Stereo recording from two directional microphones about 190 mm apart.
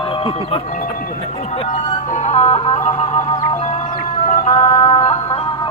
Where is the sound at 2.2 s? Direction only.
35° left (ahead or behind).